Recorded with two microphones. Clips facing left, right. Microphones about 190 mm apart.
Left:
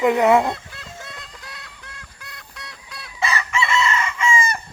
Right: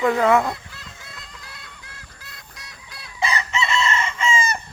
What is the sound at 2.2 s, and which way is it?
Fowl, 65° left (ahead or behind).